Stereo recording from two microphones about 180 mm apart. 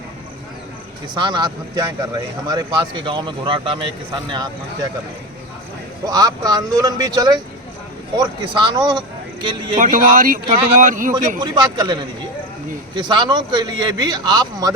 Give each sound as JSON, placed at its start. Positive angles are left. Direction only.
{"t": 1.1, "sound": "a man's voice", "side_deg": -25}
{"t": 6.1, "sound": "a man's voice", "side_deg": -20}
{"t": 9.8, "sound": "speech", "side_deg": -45}
{"t": 11.3, "sound": "a man's voice", "side_deg": -25}